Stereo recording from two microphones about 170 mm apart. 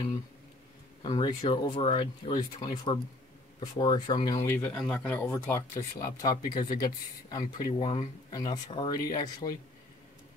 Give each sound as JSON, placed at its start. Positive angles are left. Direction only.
{"t": 1.0, "sound": "speech", "side_deg": 30}